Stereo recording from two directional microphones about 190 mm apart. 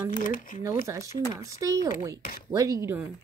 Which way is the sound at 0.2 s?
45° left (ahead or behind).